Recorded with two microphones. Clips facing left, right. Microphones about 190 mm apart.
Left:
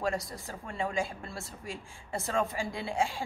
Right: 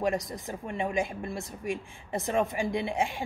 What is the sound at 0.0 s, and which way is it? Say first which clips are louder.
Speech: right 4 dB; 20° right (ahead or behind).